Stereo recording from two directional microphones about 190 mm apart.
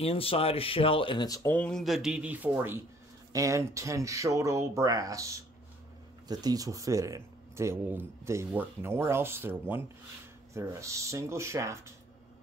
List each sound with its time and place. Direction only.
0.0 s speech: 30° left (ahead or behind); by 11.9 s 15° right (ahead or behind)